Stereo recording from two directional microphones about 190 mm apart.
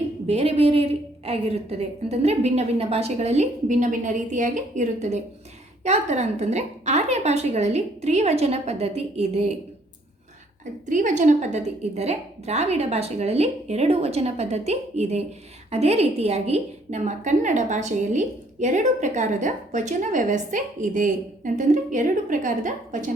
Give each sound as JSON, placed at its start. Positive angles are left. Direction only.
{"t": 0.3, "sound": "a woman's voice", "side_deg": -30}
{"t": 10.8, "sound": "a woman's voice", "side_deg": -40}